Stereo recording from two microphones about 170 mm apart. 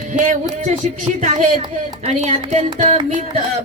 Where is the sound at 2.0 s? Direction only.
45° right (ahead or behind).